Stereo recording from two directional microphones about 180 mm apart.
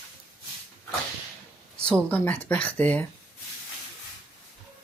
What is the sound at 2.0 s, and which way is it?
Speech, 10° left (ahead or behind).